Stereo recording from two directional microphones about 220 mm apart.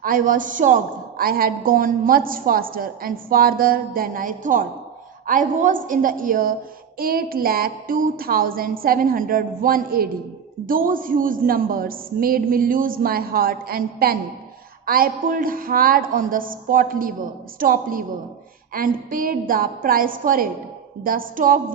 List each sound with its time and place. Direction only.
0.0 s a woman's voice: 40° right (ahead or behind)